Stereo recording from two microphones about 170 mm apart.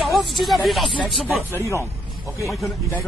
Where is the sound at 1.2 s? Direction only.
10° right (ahead or behind).